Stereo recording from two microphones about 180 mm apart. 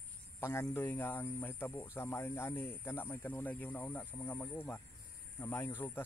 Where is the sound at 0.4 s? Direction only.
15° left (ahead or behind).